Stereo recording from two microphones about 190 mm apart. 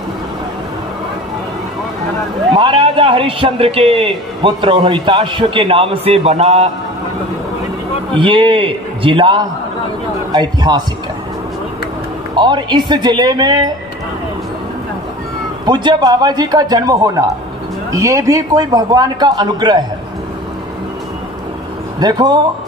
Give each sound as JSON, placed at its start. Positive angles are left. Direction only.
{"t": 2.5, "sound": "a man's voice", "side_deg": -25}
{"t": 8.1, "sound": "a man's voice", "side_deg": -25}
{"t": 12.4, "sound": "a man's voice", "side_deg": -25}
{"t": 15.6, "sound": "a man's voice", "side_deg": -25}
{"t": 22.0, "sound": "a man's voice", "side_deg": -20}